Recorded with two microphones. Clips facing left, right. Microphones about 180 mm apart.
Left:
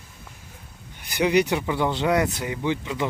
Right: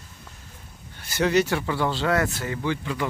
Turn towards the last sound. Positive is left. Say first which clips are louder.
# left 1 dB
turn(degrees=20)  # may be behind; listen again after turning